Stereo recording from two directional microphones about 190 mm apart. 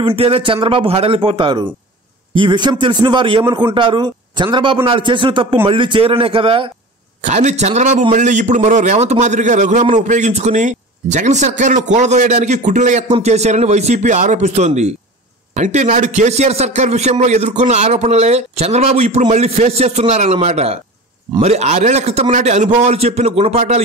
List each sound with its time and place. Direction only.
0.0 s a man's voice: 30° right (ahead or behind)
7.2 s a man's voice: 40° right (ahead or behind)